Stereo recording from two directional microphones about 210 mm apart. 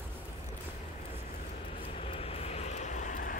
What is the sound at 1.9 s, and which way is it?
Vehicle, 30° left (ahead or behind).